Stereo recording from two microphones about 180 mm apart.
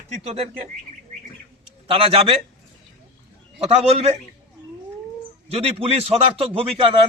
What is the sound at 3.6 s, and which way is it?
Speech, 35° right (ahead or behind).